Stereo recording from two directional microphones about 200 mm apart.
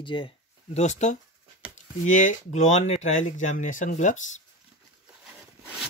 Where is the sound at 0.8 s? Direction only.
35° left (ahead or behind).